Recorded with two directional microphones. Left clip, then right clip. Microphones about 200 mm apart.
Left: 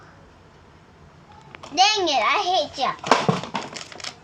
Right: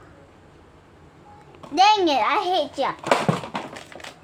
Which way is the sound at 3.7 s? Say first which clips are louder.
Left 3 dB; 20° left (ahead or behind).